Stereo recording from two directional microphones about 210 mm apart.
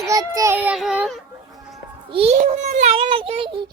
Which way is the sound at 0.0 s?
15° right (ahead or behind).